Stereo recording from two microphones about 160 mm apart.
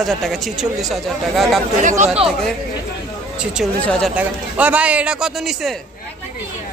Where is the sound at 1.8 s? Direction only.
50° right (ahead or behind).